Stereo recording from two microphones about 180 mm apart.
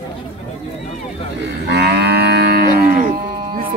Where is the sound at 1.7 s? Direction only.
70° right (ahead or behind).